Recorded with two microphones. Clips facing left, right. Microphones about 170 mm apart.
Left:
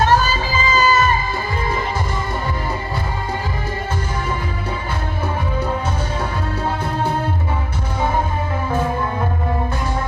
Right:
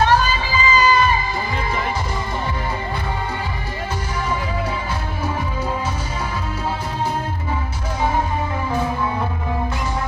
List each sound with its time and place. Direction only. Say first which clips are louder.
0.0 s music: left 1 dB; 45° left (ahead or behind)